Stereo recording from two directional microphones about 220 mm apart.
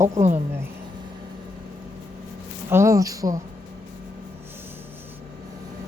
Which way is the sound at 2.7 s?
15° right (ahead or behind).